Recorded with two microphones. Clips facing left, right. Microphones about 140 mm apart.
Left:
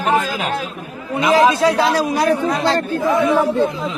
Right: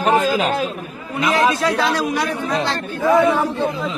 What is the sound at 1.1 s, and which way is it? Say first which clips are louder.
A man's voice: left 4 dB; 30° left (ahead or behind).